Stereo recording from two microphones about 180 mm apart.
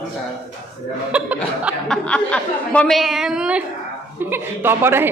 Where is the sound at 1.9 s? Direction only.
5° left (ahead or behind).